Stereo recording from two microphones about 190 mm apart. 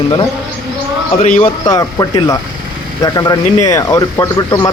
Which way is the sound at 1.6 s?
20° left (ahead or behind).